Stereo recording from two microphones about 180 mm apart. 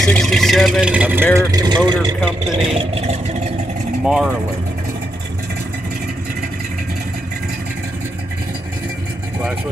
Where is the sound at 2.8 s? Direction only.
35° right (ahead or behind).